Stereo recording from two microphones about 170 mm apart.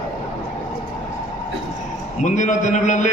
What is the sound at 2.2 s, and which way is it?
Speech, 45° left (ahead or behind).